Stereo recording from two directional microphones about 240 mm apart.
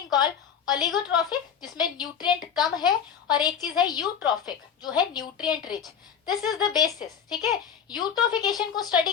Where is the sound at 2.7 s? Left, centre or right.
Centre.